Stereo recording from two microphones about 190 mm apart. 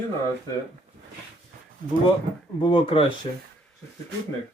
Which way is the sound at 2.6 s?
30° left (ahead or behind).